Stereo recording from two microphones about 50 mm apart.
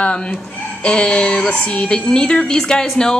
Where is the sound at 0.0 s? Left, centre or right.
Left.